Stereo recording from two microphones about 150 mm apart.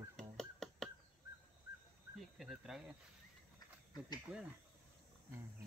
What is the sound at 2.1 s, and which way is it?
Speech, 5° right (ahead or behind).